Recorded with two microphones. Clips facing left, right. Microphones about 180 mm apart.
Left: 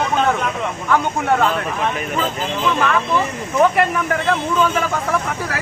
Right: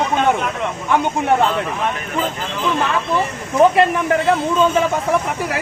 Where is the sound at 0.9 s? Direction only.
20° right (ahead or behind).